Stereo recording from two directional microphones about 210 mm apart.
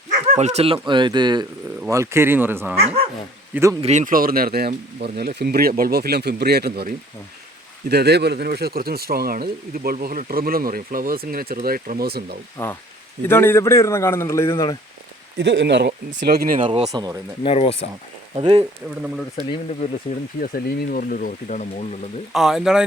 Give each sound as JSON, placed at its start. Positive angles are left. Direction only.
{"t": 0.1, "sound": "speech", "side_deg": -35}
{"t": 3.8, "sound": "speech", "side_deg": -30}
{"t": 12.6, "sound": "speech", "side_deg": 10}
{"t": 15.4, "sound": "speech", "side_deg": -55}
{"t": 16.6, "sound": "speech", "side_deg": -30}
{"t": 16.9, "sound": "speech", "side_deg": -15}
{"t": 17.4, "sound": "speech", "side_deg": 25}
{"t": 18.3, "sound": "speech", "side_deg": -25}
{"t": 19.8, "sound": "speech", "side_deg": 40}
{"t": 22.3, "sound": "speech", "side_deg": 0}